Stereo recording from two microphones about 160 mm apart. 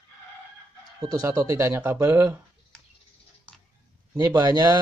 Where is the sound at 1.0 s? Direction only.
20° right (ahead or behind).